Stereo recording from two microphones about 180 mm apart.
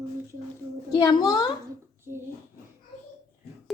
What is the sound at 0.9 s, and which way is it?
Speech, 20° left (ahead or behind).